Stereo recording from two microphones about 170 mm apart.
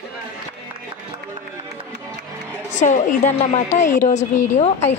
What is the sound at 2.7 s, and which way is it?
A woman's voice, 45° left (ahead or behind).